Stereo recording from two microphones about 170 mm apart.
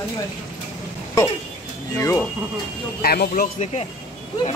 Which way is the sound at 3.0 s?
60° left (ahead or behind).